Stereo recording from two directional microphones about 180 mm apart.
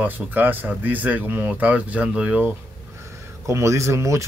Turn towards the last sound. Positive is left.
turn(degrees=-15)  # may be behind; listen again after turning